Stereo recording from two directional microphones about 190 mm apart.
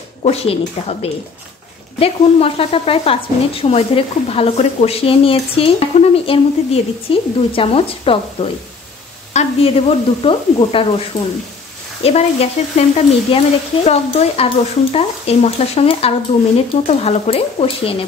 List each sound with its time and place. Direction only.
0.2 s speech: 30° left (ahead or behind)
2.0 s speech: 30° left (ahead or behind)